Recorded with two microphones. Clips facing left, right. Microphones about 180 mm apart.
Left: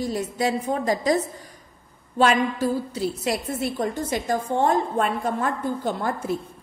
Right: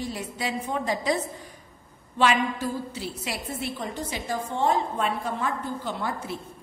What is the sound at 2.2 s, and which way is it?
A woman's voice, 40° left (ahead or behind).